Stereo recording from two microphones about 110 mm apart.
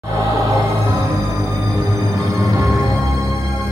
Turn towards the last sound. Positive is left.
turn(degrees=-30)  # may be behind; listen again after turning